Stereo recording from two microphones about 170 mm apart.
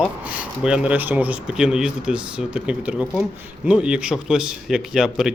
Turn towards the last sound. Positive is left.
turn(degrees=0)  # may be behind; listen again after turning